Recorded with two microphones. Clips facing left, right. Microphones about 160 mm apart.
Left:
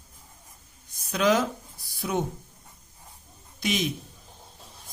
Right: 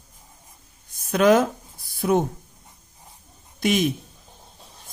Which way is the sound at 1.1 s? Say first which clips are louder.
Right 6 dB; 50° right (ahead or behind).